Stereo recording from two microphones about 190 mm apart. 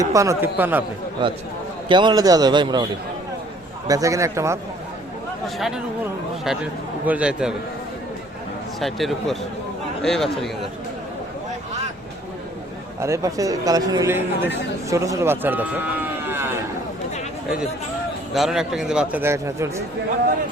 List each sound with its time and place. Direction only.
0.0 s a man's voice: 15° right (ahead or behind)
1.2 s speech: 25° right (ahead or behind)
3.8 s a man's voice: 15° right (ahead or behind)
5.5 s a man's voice: centre (ahead or behind)
7.0 s a man's voice: 5° right (ahead or behind)
8.8 s a man's voice: centre (ahead or behind)
13.0 s a man's voice: 15° right (ahead or behind)
16.2 s a sound: 10° right (ahead or behind)
18.3 s a man's voice: centre (ahead or behind)